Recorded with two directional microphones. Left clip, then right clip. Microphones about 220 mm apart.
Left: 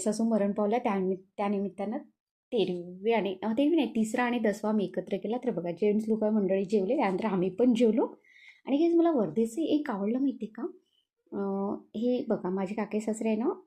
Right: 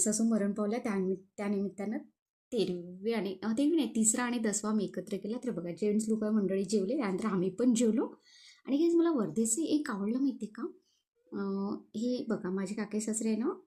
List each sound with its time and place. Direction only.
0.0 s a woman's voice: centre (ahead or behind)